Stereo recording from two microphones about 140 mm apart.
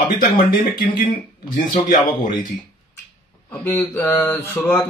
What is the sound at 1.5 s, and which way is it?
Speech, 70° left (ahead or behind).